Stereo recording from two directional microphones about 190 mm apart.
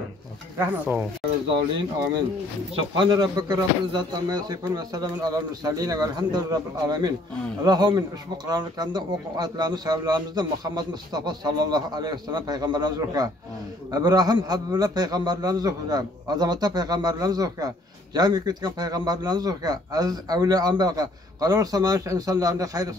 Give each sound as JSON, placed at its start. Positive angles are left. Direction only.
{"t": 0.6, "sound": "speech", "side_deg": -10}
{"t": 2.7, "sound": "a man's voice", "side_deg": -25}